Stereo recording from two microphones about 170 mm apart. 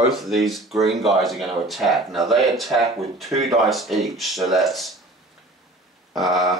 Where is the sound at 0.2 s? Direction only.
Centre (ahead or behind).